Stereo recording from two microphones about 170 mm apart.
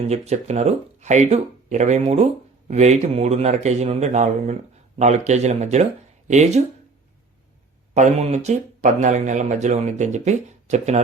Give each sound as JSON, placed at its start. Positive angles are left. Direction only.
{"t": 0.1, "sound": "a man's voice", "side_deg": -40}
{"t": 7.9, "sound": "speech", "side_deg": -45}